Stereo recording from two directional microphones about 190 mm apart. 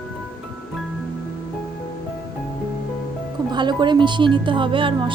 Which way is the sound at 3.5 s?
25° right (ahead or behind).